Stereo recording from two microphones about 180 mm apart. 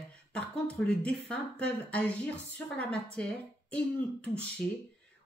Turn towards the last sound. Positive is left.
turn(degrees=5)  # may be behind; listen again after turning